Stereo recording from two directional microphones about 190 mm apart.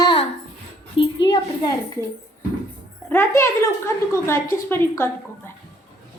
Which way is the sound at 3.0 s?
15° left (ahead or behind).